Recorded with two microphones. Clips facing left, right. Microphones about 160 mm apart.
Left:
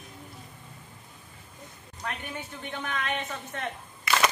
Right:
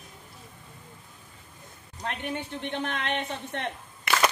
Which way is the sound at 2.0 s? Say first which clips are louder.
Right 4 dB; 25° right (ahead or behind).